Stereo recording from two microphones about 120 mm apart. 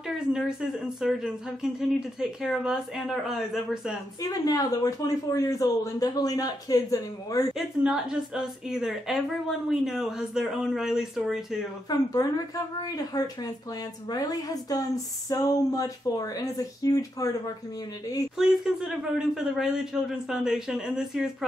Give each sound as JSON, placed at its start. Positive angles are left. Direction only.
{"t": 0.3, "sound": "speech", "side_deg": -5}
{"t": 4.2, "sound": "speech", "side_deg": 30}
{"t": 7.5, "sound": "speech", "side_deg": -5}
{"t": 11.9, "sound": "a woman's voice", "side_deg": 30}
{"t": 18.4, "sound": "speech", "side_deg": -5}